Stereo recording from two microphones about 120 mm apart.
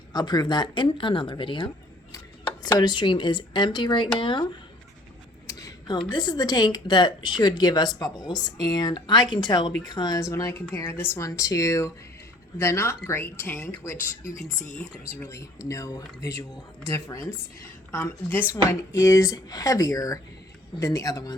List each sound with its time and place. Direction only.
0.1 s speech: 35° left (ahead or behind)
5.5 s a sound: 30° left (ahead or behind)
6.1 s speech: 35° left (ahead or behind); by 14.1 s 20° left (ahead or behind)
15.3 s speech: 25° left (ahead or behind)